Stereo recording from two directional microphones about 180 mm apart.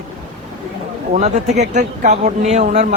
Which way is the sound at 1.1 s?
40° right (ahead or behind).